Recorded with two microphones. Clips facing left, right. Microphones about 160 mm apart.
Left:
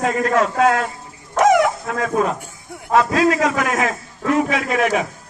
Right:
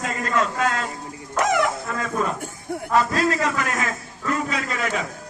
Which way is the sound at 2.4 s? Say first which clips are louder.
Right 7 dB; 50° right (ahead or behind).